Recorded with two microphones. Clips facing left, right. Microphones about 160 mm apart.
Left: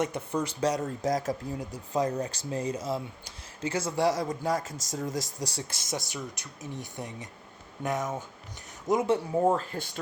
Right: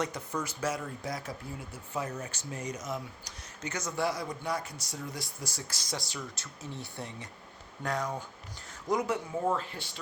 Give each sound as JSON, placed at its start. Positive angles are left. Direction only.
{"t": 0.0, "sound": "speech", "side_deg": 30}
{"t": 4.2, "sound": "speech", "side_deg": 40}
{"t": 5.4, "sound": "speech", "side_deg": 25}
{"t": 9.4, "sound": "speech", "side_deg": 40}